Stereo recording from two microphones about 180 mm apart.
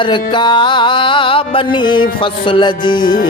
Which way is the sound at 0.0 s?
25° left (ahead or behind).